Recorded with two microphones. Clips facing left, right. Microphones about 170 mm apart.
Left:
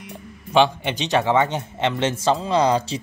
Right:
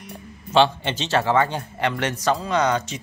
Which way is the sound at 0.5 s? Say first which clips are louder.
Even; 15° left (ahead or behind).